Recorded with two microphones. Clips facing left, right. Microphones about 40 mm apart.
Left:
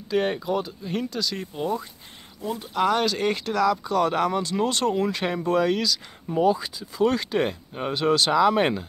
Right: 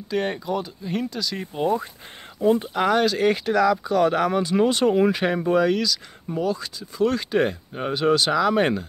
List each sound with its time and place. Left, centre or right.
0.1 s speech: centre
1.5 s speech: centre
2.4 s speech: right
2.7 s speech: centre
6.3 s speech: centre